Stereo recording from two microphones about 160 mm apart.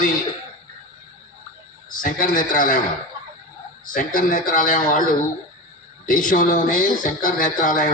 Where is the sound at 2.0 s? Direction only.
55° left (ahead or behind).